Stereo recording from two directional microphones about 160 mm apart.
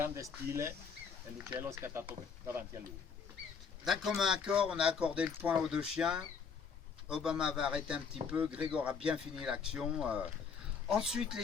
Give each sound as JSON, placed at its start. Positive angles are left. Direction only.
{"t": 0.0, "sound": "speech", "side_deg": -20}
{"t": 1.5, "sound": "speech", "side_deg": -15}
{"t": 3.8, "sound": "speech", "side_deg": 0}